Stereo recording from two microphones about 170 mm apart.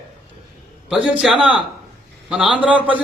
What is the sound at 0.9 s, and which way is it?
A man's voice, 5° right (ahead or behind).